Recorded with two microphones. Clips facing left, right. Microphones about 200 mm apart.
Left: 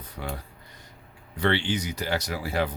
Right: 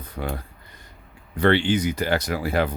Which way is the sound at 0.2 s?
60° right (ahead or behind).